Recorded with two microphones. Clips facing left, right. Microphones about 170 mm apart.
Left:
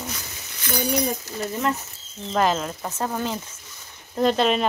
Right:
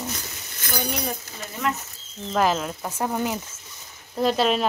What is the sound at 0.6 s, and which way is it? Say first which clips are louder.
Speech: left 3 dB; 50° right (ahead or behind).